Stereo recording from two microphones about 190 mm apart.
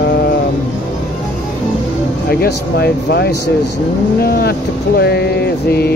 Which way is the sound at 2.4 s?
60° left (ahead or behind).